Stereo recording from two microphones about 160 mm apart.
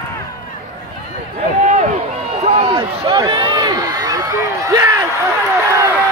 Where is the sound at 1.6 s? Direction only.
50° right (ahead or behind).